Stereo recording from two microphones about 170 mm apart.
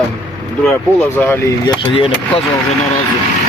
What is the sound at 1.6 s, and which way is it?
Speech, 30° left (ahead or behind).